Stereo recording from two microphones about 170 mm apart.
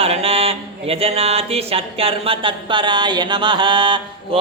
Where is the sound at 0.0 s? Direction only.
35° right (ahead or behind).